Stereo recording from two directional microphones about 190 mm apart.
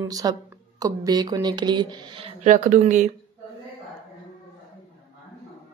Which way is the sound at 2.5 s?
40° right (ahead or behind).